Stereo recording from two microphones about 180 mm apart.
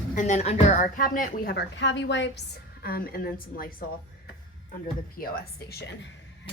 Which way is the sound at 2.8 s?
55° left (ahead or behind).